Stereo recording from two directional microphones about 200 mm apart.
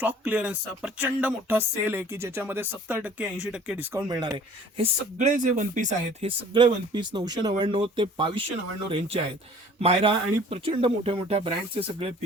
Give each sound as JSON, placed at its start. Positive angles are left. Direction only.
{"t": 0.0, "sound": "speech", "side_deg": -10}
{"t": 4.8, "sound": "speech", "side_deg": -35}
{"t": 6.5, "sound": "speech", "side_deg": -25}
{"t": 9.8, "sound": "speech", "side_deg": -30}